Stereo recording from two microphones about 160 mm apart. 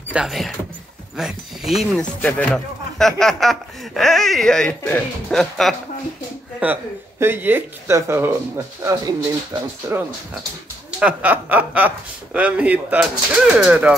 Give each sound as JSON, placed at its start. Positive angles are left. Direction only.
{"t": 0.1, "sound": "speech", "side_deg": 0}
{"t": 6.6, "sound": "a man's voice", "side_deg": -10}
{"t": 11.0, "sound": "a man's voice", "side_deg": -10}